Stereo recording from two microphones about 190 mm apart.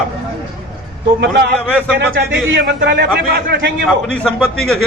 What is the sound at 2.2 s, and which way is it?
Speech, 80° right.